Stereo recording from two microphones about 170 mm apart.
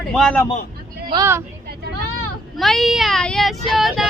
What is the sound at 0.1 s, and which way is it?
Speech, 5° left (ahead or behind).